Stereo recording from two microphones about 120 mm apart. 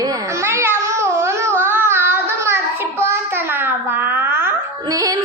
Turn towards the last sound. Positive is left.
turn(degrees=-30)  # may be behind; listen again after turning